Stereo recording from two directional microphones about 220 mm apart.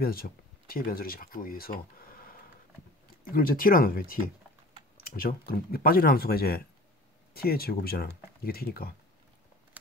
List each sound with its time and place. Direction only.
0.0 s speech: 45° left (ahead or behind)